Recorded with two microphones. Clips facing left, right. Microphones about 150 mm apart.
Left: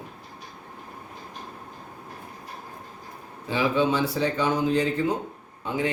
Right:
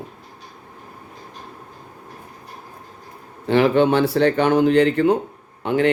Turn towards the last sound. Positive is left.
turn(degrees=-70)  # may be behind; listen again after turning